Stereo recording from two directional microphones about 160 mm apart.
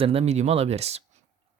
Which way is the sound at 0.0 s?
40° right (ahead or behind).